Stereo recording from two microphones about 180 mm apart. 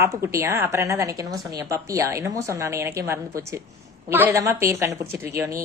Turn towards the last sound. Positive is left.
turn(degrees=-15)  # may be behind; listen again after turning